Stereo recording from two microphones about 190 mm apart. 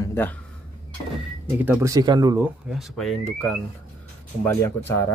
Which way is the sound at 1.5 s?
10° right (ahead or behind).